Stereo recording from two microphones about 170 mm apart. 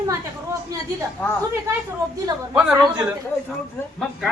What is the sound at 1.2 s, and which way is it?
Speech, 10° left (ahead or behind).